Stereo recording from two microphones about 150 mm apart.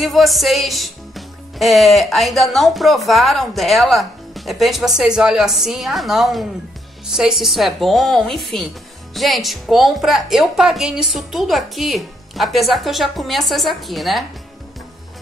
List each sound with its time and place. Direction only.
0.0 s a woman's voice: centre (ahead or behind)